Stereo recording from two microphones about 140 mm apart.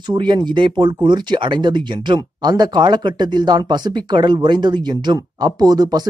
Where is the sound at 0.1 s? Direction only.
30° right (ahead or behind).